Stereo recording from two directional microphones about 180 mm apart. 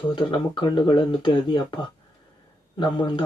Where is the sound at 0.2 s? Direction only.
25° left (ahead or behind).